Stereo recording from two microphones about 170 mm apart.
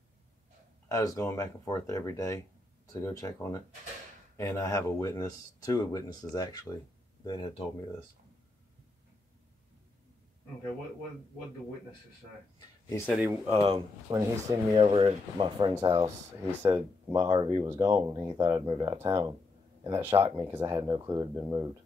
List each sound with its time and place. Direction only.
0.8 s speech: 15° left (ahead or behind)
12.5 s speech: 15° left (ahead or behind)
13.5 s speech: 35° right (ahead or behind)
14.1 s speech: 20° right (ahead or behind)